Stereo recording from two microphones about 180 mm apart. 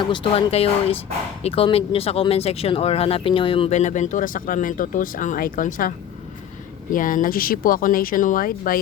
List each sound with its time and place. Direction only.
0.0 s speech: 25° left (ahead or behind); by 5.9 s 50° left (ahead or behind)
6.9 s speech: 50° left (ahead or behind)